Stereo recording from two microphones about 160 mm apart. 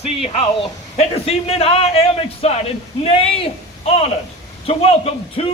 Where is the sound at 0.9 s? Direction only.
40° left (ahead or behind).